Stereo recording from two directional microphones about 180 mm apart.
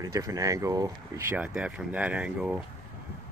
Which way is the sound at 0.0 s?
20° right (ahead or behind).